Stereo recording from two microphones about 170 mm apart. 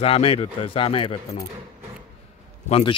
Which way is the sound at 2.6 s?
35° left (ahead or behind).